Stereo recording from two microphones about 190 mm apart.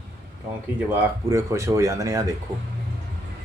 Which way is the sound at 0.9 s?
15° right (ahead or behind).